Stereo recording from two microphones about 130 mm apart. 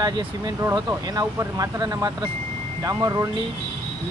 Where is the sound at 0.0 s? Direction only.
30° right (ahead or behind).